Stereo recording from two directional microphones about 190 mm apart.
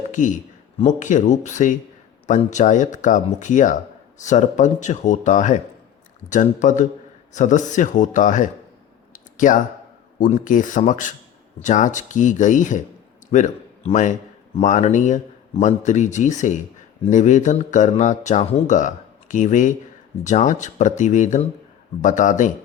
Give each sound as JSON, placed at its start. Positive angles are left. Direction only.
{"t": 0.1, "sound": "speech", "side_deg": 40}
{"t": 9.1, "sound": "a sound", "side_deg": 40}
{"t": 10.2, "sound": "a man's voice", "side_deg": 45}